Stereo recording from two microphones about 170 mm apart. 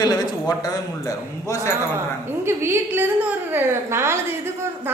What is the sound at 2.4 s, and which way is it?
A woman's voice, 15° right (ahead or behind).